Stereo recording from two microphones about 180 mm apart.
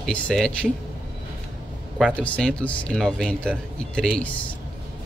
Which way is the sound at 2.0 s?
5° left (ahead or behind).